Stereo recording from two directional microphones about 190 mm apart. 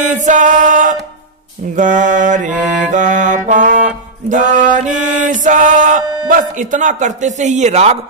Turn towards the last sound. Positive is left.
turn(degrees=-35)  # may be behind; listen again after turning